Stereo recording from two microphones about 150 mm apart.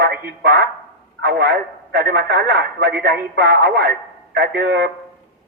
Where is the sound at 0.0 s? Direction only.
90° right.